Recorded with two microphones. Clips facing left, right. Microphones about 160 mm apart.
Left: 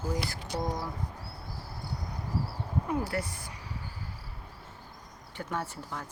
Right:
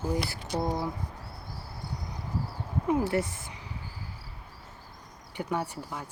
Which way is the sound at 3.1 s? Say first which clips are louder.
Right 5 dB; 20° right (ahead or behind).